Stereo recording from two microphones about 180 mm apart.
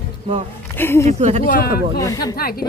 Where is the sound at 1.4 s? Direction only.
55° left (ahead or behind).